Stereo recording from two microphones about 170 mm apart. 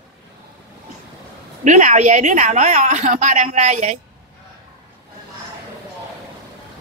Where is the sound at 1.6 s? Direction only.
45° right (ahead or behind).